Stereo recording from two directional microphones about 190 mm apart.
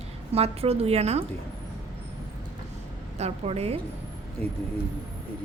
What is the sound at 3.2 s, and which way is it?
Speech, 35° right (ahead or behind).